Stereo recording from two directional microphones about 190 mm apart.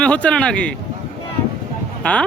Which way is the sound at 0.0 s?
5° left (ahead or behind).